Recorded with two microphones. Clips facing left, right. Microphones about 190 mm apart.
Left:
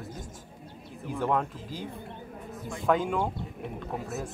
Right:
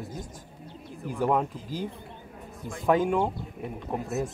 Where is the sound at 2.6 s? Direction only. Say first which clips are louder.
Right 3 dB; centre (ahead or behind).